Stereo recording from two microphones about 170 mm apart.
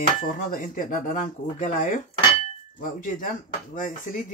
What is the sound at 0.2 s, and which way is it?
Speech, 50° left (ahead or behind).